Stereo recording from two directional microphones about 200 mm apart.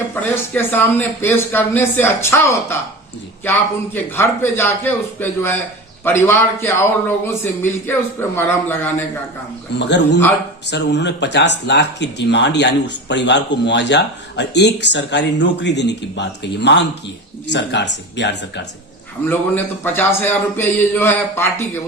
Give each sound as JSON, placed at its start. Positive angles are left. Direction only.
{"t": 0.1, "sound": "speech", "side_deg": 10}
{"t": 4.1, "sound": "speech", "side_deg": 10}
{"t": 9.7, "sound": "speech", "side_deg": 60}
{"t": 19.3, "sound": "speech", "side_deg": 10}